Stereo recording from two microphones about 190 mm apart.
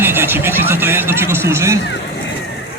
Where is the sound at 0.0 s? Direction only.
10° right (ahead or behind).